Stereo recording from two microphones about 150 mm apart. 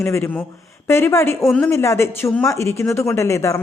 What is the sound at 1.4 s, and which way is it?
Speech, centre (ahead or behind).